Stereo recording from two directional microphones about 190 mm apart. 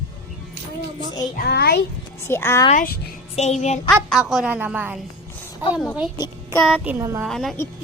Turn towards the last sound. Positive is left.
turn(degrees=0)  # may be behind; listen again after turning